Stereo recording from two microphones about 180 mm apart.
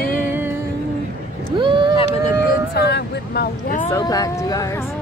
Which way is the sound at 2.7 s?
65° left (ahead or behind).